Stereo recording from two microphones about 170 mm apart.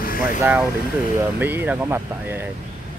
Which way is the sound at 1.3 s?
10° right (ahead or behind).